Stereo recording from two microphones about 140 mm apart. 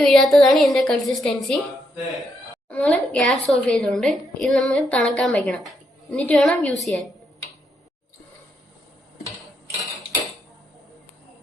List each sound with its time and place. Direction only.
0.0 s a woman's voice: centre (ahead or behind)
2.6 s a woman's voice: 10° left (ahead or behind)